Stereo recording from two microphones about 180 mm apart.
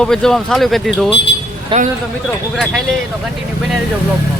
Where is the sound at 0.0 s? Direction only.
5° left (ahead or behind).